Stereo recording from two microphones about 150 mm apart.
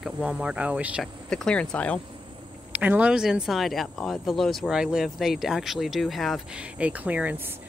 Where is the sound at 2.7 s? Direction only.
10° right (ahead or behind).